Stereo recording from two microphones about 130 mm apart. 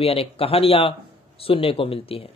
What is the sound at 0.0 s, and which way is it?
Speech, 50° left (ahead or behind).